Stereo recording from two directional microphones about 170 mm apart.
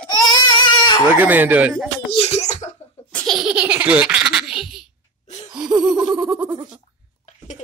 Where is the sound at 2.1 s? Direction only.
40° left (ahead or behind).